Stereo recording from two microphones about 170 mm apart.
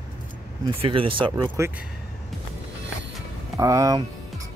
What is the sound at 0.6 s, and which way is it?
Speech, 30° right (ahead or behind).